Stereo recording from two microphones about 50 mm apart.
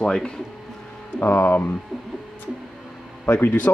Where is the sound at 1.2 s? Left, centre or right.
Left.